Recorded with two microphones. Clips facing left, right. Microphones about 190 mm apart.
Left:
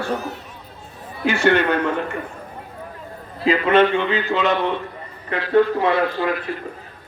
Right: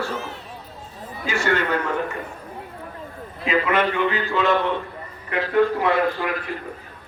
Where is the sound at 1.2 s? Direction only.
65° left (ahead or behind).